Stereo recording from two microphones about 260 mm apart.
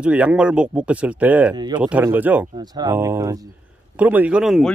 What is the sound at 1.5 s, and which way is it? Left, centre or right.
A man's voice, centre.